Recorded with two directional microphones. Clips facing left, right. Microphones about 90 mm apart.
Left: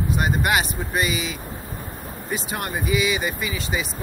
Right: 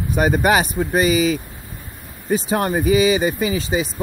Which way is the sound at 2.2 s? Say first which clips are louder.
Right 10 dB; 40° right (ahead or behind).